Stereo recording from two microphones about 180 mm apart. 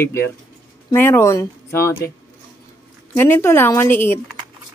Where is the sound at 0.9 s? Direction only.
15° left (ahead or behind).